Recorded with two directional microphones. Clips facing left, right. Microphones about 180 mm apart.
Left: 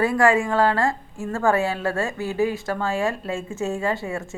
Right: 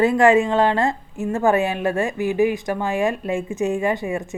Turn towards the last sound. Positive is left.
turn(degrees=-15)  # may be behind; listen again after turning